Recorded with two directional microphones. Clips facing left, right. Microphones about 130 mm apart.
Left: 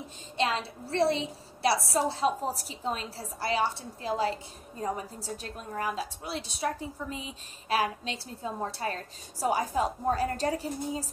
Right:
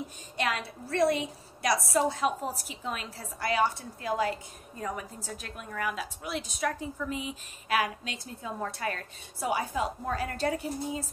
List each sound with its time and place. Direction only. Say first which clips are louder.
0.4 s a woman's voice: left 2 dB; 30° left (ahead or behind)